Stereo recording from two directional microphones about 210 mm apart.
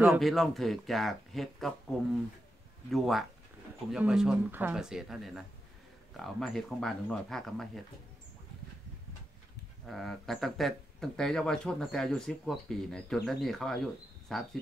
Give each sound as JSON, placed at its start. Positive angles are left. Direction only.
{"t": 0.0, "sound": "speech", "side_deg": 0}
{"t": 9.8, "sound": "speech", "side_deg": 0}